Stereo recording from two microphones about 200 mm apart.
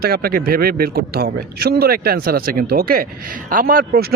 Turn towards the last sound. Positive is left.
turn(degrees=-45)  # may be behind; listen again after turning